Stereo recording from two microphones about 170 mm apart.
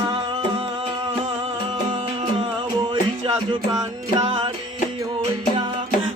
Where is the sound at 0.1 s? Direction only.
30° right (ahead or behind).